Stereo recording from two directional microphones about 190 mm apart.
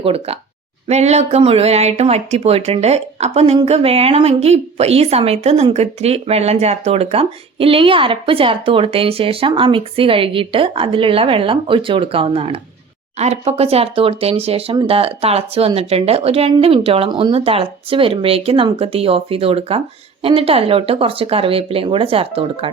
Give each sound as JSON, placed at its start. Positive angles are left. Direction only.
{"t": 0.0, "sound": "speech", "side_deg": -30}